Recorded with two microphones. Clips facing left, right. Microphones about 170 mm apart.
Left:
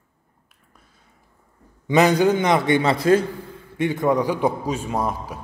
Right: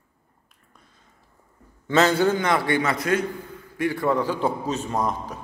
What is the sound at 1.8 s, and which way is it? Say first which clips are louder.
A man's voice: left 3 dB; 15° left (ahead or behind).